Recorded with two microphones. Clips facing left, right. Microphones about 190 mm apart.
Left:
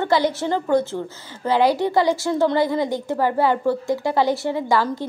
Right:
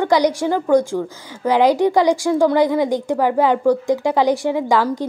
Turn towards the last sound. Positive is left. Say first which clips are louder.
# right 3 dB
turn(degrees=-15)  # may be behind; listen again after turning